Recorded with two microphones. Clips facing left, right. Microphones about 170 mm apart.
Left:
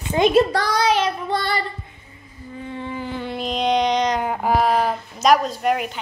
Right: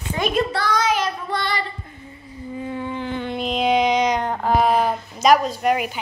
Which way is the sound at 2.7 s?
Centre (ahead or behind).